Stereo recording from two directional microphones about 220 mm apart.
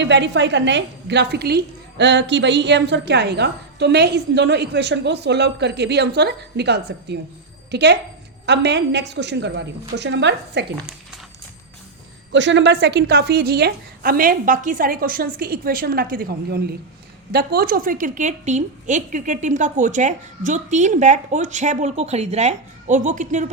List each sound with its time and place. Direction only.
0.0 s a woman's voice: 55° right (ahead or behind)
12.3 s a woman's voice: 55° right (ahead or behind); by 23.5 s 35° right (ahead or behind)